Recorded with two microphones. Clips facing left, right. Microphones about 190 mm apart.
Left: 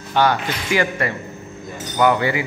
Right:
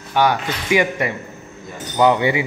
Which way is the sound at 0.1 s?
10° right (ahead or behind).